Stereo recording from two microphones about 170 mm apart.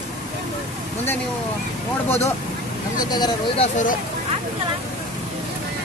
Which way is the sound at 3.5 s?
45° left (ahead or behind).